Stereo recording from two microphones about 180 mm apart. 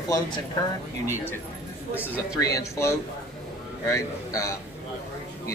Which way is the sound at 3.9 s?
15° left (ahead or behind).